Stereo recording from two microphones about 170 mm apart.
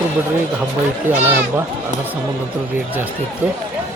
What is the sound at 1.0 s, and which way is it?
Speech, 10° right (ahead or behind).